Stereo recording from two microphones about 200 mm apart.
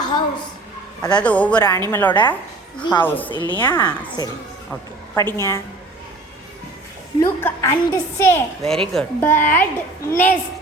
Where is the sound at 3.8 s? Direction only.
20° left (ahead or behind).